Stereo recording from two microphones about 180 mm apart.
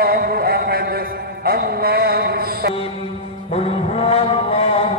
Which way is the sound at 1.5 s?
60° right (ahead or behind).